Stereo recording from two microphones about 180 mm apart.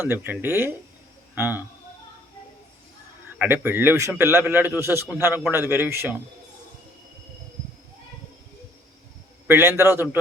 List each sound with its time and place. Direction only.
0.0 s a man's voice: 10° right (ahead or behind)
3.3 s a man's voice: 10° right (ahead or behind)
9.5 s a man's voice: 15° right (ahead or behind)